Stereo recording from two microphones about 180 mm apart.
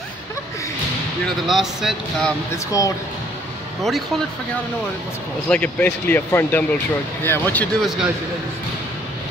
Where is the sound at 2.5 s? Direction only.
20° left (ahead or behind).